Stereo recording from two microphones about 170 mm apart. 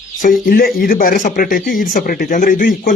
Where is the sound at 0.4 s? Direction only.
60° left (ahead or behind).